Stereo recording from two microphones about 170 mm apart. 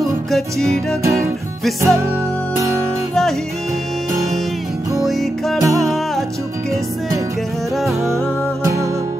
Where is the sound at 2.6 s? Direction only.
15° right (ahead or behind).